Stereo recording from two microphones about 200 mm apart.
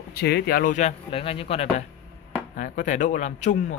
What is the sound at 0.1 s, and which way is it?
Speech, 55° left (ahead or behind).